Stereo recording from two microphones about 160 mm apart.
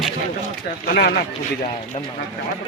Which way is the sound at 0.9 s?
90° left.